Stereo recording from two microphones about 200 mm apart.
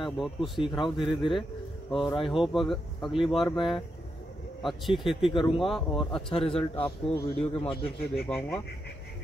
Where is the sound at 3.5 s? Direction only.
25° left (ahead or behind).